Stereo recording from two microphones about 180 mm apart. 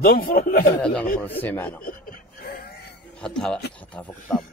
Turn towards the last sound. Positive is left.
turn(degrees=5)  # may be behind; listen again after turning